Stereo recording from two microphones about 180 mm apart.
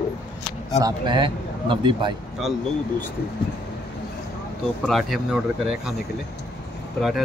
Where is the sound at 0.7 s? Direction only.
25° right (ahead or behind).